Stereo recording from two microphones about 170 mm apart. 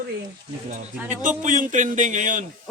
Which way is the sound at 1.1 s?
45° right (ahead or behind).